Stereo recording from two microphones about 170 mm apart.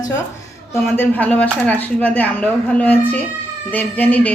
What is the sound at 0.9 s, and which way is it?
Speech, 10° left (ahead or behind).